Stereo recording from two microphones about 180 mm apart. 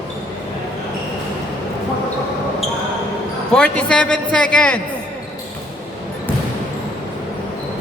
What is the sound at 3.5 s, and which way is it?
A man's voice, 5° left (ahead or behind).